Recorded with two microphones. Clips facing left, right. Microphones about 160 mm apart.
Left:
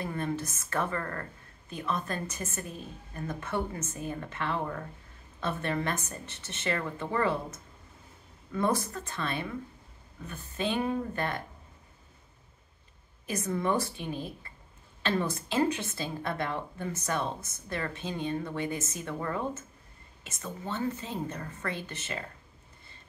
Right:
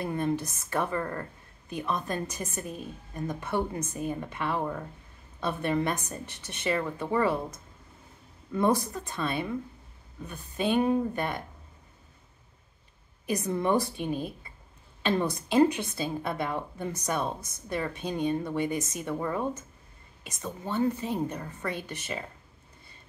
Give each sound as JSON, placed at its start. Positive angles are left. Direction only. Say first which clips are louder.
{"t": 0.0, "sound": "a woman's voice", "louder": "right 4 dB", "side_deg": -15}
{"t": 8.5, "sound": "a woman's voice", "louder": "right 3 dB", "side_deg": -15}
{"t": 13.3, "sound": "a woman's voice", "louder": "right 3 dB", "side_deg": -20}